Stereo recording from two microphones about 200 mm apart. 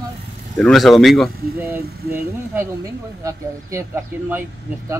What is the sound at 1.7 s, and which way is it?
Speech, 10° right (ahead or behind).